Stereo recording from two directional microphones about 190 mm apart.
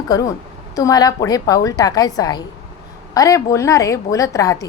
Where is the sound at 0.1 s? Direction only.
20° left (ahead or behind).